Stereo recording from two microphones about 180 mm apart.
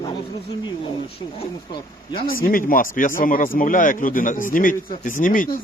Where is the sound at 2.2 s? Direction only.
50° left (ahead or behind).